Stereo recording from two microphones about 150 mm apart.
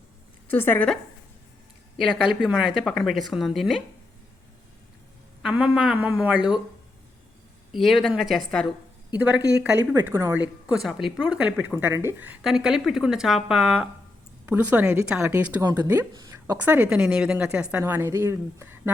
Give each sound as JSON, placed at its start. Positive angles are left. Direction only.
{"t": 0.4, "sound": "a woman's voice", "side_deg": 15}
{"t": 2.0, "sound": "speech", "side_deg": 0}
{"t": 5.4, "sound": "speech", "side_deg": -5}
{"t": 7.7, "sound": "speech", "side_deg": 0}
{"t": 9.1, "sound": "a woman's voice", "side_deg": -10}
{"t": 10.7, "sound": "a woman's voice", "side_deg": 0}
{"t": 16.6, "sound": "a woman's voice", "side_deg": -10}